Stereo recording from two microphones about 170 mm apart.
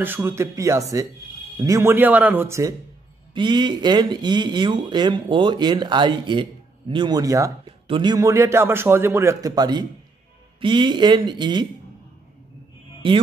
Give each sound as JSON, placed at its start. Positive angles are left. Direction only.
{"t": 0.0, "sound": "a man's voice", "side_deg": -15}
{"t": 3.3, "sound": "a man's voice", "side_deg": -25}
{"t": 13.0, "sound": "speech", "side_deg": -30}